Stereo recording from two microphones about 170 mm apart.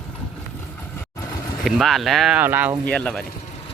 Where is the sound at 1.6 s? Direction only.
Centre (ahead or behind).